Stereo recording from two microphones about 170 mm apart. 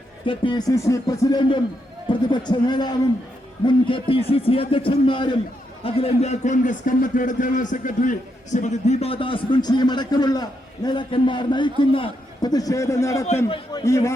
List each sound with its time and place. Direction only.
0.3 s a man's voice: 30° left (ahead or behind)
13.2 s a man's voice: 40° left (ahead or behind)
13.7 s a man's voice: 20° left (ahead or behind)